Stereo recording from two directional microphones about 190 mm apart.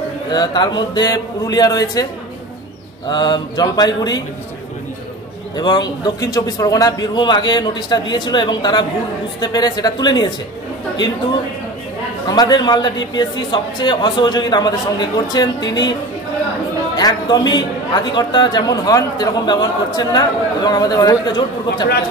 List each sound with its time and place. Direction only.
0.3 s a man's voice: 20° left (ahead or behind)
3.1 s a man's voice: 25° left (ahead or behind)
5.6 s a man's voice: 20° left (ahead or behind)
12.3 s a man's voice: 20° left (ahead or behind)
16.9 s a man's voice: 20° left (ahead or behind)